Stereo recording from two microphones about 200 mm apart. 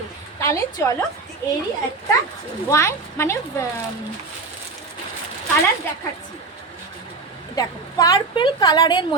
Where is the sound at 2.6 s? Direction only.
15° left (ahead or behind).